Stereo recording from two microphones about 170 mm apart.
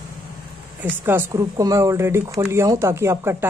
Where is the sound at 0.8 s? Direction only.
15° right (ahead or behind).